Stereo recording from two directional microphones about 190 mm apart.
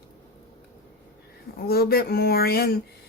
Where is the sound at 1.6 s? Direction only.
55° left (ahead or behind).